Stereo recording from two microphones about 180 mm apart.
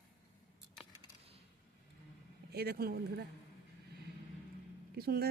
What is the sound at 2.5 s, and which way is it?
Speech, 60° right (ahead or behind).